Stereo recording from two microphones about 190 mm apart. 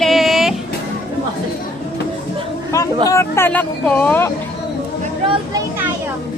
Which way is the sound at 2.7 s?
15° left (ahead or behind).